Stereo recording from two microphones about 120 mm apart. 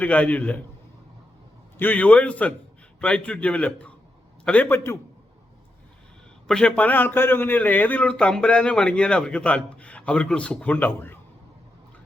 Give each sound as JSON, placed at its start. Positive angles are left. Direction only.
{"t": 0.0, "sound": "a man's voice", "side_deg": 10}
{"t": 1.8, "sound": "a man's voice", "side_deg": 15}
{"t": 6.5, "sound": "a man's voice", "side_deg": 5}